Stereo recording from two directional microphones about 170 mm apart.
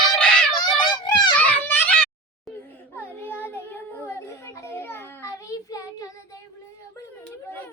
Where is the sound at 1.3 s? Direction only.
10° left (ahead or behind).